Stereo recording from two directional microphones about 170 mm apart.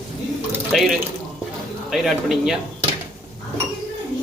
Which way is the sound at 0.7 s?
Centre (ahead or behind).